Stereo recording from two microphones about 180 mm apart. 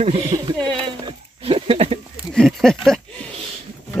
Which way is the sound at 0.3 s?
25° right (ahead or behind).